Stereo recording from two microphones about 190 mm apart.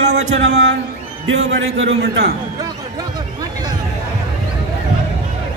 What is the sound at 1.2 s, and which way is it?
A man's voice, 90° right.